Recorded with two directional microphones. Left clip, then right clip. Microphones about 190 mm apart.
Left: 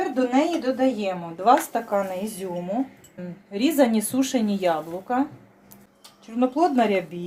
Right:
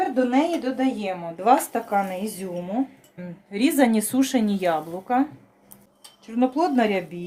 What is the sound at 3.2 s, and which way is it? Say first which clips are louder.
Speech: right 1 dB; 35° right (ahead or behind).